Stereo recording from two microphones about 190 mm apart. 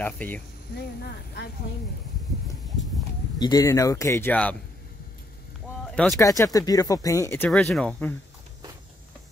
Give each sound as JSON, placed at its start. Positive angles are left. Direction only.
{"t": 0.0, "sound": "speech", "side_deg": 10}
{"t": 0.7, "sound": "speech", "side_deg": 60}
{"t": 3.3, "sound": "speech", "side_deg": 20}
{"t": 6.1, "sound": "speech", "side_deg": 15}